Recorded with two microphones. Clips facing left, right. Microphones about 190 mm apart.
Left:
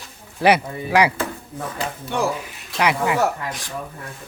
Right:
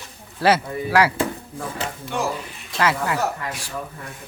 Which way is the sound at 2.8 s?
15° left (ahead or behind).